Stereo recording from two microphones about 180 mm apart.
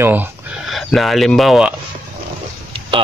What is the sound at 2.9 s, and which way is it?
Speech, 30° right (ahead or behind).